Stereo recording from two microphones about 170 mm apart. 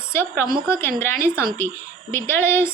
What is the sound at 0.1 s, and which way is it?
A woman's voice, 15° left (ahead or behind).